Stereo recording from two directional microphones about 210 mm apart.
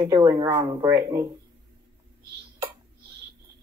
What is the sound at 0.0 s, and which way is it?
Speech, 15° right (ahead or behind).